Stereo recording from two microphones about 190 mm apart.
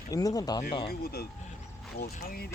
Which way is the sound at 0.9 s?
55° left (ahead or behind).